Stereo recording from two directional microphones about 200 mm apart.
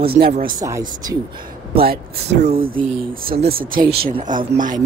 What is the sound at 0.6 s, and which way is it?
Speech, 15° right (ahead or behind).